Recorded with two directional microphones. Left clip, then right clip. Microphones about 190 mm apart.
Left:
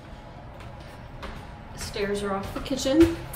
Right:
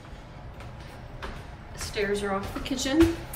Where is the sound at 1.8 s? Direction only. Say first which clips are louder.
Right 1 dB; 10° left (ahead or behind).